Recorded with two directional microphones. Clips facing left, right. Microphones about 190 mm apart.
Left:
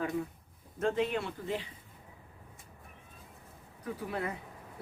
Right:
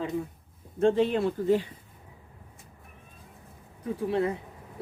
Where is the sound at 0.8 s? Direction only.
30° right (ahead or behind).